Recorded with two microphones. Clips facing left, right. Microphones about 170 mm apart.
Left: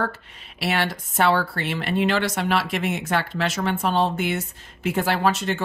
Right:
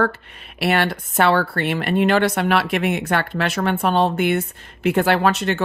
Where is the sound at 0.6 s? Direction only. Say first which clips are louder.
Right 5 dB; 55° right (ahead or behind).